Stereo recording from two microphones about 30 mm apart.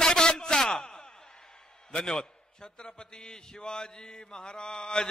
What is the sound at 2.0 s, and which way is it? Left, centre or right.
A man's voice, left.